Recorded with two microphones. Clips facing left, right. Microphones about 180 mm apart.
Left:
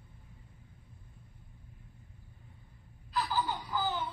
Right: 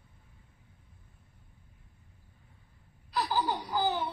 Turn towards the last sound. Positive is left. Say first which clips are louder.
# right 4 dB
turn(degrees=-40)  # may be behind; listen again after turning